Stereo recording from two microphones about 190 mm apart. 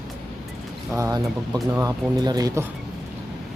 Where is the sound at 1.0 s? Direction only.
20° right (ahead or behind).